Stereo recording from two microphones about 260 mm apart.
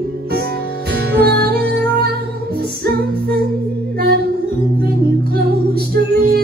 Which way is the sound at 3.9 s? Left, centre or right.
Right.